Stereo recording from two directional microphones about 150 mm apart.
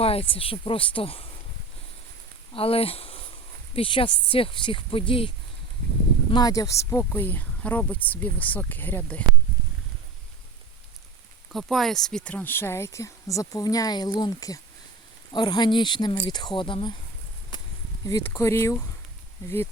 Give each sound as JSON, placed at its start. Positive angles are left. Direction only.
{"t": 0.0, "sound": "speech", "side_deg": 40}
{"t": 2.5, "sound": "speech", "side_deg": 40}
{"t": 6.3, "sound": "speech", "side_deg": 25}
{"t": 11.5, "sound": "speech", "side_deg": 0}
{"t": 18.0, "sound": "speech", "side_deg": 20}